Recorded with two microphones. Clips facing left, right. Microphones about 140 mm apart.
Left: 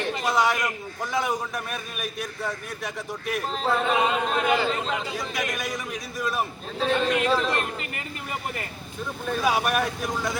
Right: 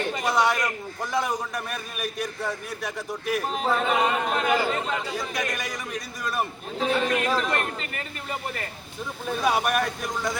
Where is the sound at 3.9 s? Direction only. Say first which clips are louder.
Even; 15° left (ahead or behind).